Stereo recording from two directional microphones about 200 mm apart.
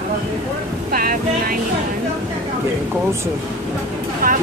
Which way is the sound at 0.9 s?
45° right (ahead or behind).